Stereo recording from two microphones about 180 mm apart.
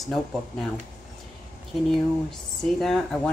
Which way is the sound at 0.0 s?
Centre (ahead or behind).